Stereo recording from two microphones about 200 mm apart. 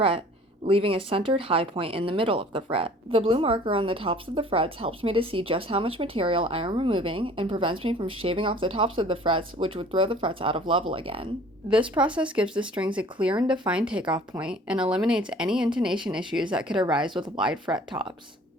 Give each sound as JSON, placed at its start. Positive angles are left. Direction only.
{"t": 0.6, "sound": "speech", "side_deg": -30}
{"t": 12.2, "sound": "speech", "side_deg": -5}